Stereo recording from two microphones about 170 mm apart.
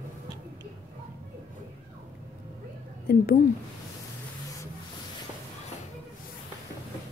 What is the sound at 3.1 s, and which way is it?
Speech, 60° left (ahead or behind).